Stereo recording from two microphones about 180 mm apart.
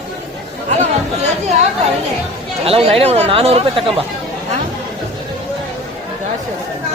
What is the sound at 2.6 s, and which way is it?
Speech, 35° right (ahead or behind).